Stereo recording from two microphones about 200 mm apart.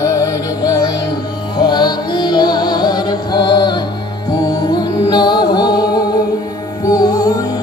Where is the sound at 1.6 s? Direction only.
20° left (ahead or behind).